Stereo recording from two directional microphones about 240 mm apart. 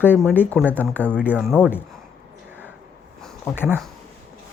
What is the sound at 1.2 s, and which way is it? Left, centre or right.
Speech, centre.